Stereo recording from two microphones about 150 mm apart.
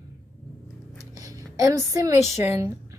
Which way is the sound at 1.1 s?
25° right (ahead or behind).